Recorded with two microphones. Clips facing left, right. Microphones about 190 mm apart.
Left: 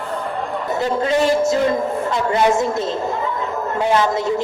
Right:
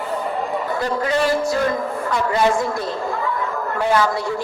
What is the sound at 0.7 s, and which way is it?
A man's voice, 25° left (ahead or behind).